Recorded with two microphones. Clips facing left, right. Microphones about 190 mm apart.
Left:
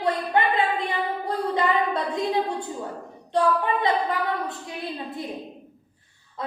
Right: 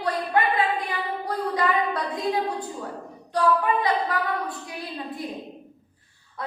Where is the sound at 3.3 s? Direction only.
25° left (ahead or behind).